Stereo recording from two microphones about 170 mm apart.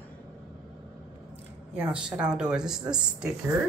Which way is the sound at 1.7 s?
5° right (ahead or behind).